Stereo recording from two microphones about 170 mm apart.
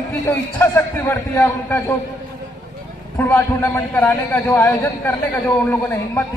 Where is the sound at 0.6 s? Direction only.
10° left (ahead or behind).